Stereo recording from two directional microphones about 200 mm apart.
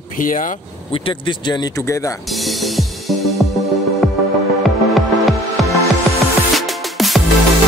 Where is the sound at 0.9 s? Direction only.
25° left (ahead or behind).